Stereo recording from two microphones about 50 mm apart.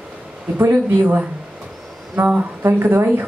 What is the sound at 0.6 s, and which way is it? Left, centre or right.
Speech, right.